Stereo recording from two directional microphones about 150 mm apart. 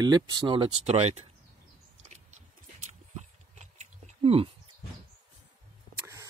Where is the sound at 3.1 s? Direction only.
50° right (ahead or behind).